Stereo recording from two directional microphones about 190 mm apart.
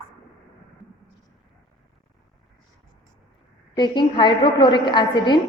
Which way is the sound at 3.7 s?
25° left (ahead or behind).